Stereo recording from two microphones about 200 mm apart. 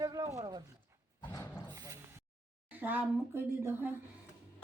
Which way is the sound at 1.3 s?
15° left (ahead or behind).